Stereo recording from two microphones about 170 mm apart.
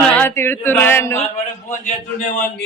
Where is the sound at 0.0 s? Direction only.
10° left (ahead or behind).